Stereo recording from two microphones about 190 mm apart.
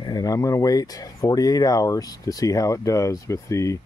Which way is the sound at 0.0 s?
20° left (ahead or behind).